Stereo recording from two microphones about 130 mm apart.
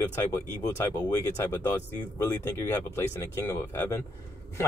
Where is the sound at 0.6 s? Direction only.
20° left (ahead or behind).